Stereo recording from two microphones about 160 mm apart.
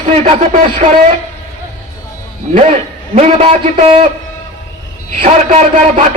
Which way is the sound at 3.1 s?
40° right (ahead or behind).